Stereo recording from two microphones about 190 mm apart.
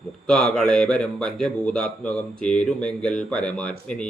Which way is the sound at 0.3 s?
5° left (ahead or behind).